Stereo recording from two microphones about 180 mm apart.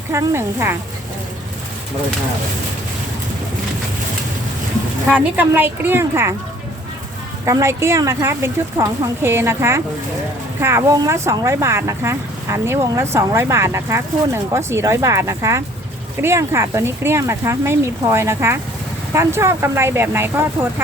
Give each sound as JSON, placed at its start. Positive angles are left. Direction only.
{"t": 0.1, "sound": "speech", "side_deg": -15}
{"t": 5.1, "sound": "speech", "side_deg": -10}
{"t": 7.4, "sound": "speech", "side_deg": -15}